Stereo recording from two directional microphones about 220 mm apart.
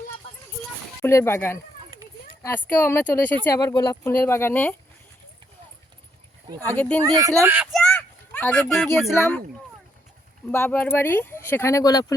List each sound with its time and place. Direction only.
1.0 s speech: 10° left (ahead or behind)
6.6 s speech: 5° left (ahead or behind)
7.0 s speech: 15° right (ahead or behind); by 9.4 s 10° left (ahead or behind)
10.5 s speech: 10° left (ahead or behind)